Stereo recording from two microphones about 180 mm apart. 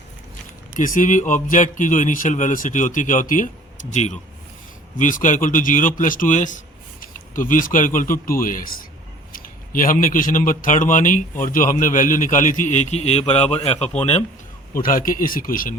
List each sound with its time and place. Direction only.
0.8 s a man's voice: 45° left (ahead or behind)
14.7 s a man's voice: 50° left (ahead or behind)